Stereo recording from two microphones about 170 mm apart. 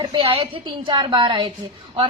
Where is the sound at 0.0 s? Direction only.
30° right (ahead or behind).